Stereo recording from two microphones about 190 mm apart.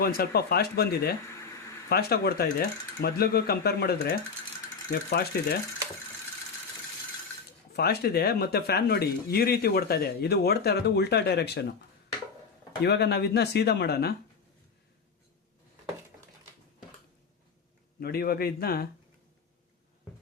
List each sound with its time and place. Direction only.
0.0 s speech: 55° left (ahead or behind)
7.7 s speech: 55° left (ahead or behind)
12.8 s speech: 60° left (ahead or behind)
18.0 s speech: 55° left (ahead or behind)